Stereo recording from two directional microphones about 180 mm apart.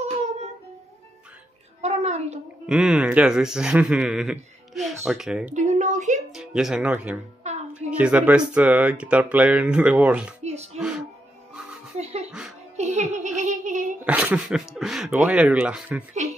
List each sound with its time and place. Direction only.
1.8 s a sound: 35° right (ahead or behind)
2.6 s a man's voice: 5° right (ahead or behind)
5.5 s a sound: 40° right (ahead or behind)
6.3 s speech: centre (ahead or behind)
7.5 s music: 40° right (ahead or behind)
8.0 s speech: 10° right (ahead or behind)
10.4 s music: 35° right (ahead or behind)
10.8 s music: 5° right (ahead or behind)
12.0 s music: 35° right (ahead or behind)
12.3 s music: 5° right (ahead or behind)
12.7 s a sound: 40° right (ahead or behind)
14.0 s speech: 5° right (ahead or behind)